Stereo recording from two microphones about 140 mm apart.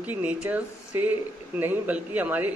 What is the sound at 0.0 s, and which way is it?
A man's voice, 10° right (ahead or behind).